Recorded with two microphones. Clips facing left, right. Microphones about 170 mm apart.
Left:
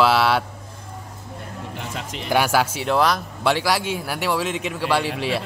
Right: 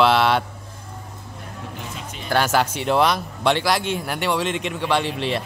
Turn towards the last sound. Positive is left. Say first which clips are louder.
# even
turn(degrees=5)  # may be behind; listen again after turning